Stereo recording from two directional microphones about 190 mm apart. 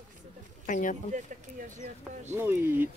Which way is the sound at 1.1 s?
40° right (ahead or behind).